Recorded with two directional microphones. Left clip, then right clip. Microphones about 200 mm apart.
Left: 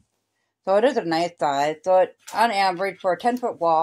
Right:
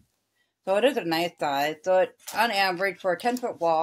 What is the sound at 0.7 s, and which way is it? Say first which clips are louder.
Speech: left 4 dB; 25° left (ahead or behind).